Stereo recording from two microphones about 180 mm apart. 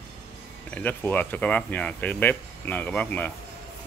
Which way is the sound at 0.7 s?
10° left (ahead or behind).